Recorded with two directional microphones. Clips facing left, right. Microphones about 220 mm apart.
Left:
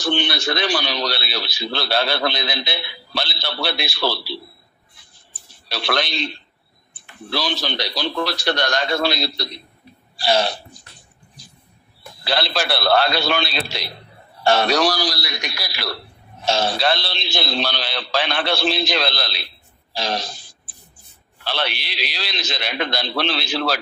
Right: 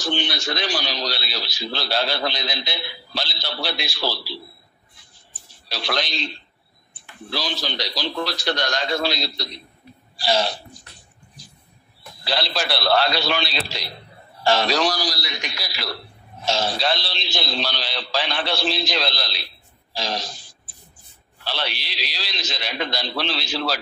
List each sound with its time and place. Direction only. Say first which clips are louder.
0.0 s a man's voice: left 4 dB; 65° left (ahead or behind)
5.7 s a man's voice: left 3 dB; 60° left (ahead or behind)
10.1 s hiccup: left 3 dB; 60° left (ahead or behind)
12.3 s a man's voice: left 3 dB; 60° left (ahead or behind)
21.5 s a man's voice: left 3 dB; 60° left (ahead or behind)